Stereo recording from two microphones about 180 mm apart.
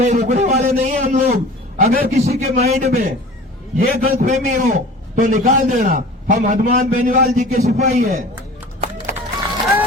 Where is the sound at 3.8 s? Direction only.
55° right (ahead or behind).